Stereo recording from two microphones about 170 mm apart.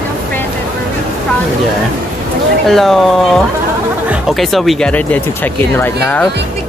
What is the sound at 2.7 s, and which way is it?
Speech, centre (ahead or behind).